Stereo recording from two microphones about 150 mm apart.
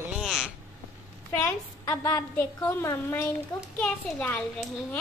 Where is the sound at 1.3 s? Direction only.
20° left (ahead or behind).